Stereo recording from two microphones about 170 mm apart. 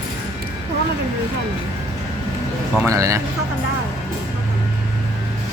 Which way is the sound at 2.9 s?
20° right (ahead or behind).